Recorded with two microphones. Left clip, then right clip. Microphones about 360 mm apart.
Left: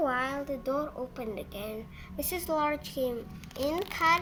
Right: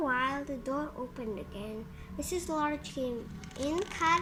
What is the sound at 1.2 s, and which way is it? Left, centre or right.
Speech, left.